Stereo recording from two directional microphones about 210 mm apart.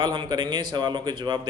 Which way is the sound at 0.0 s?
20° right (ahead or behind).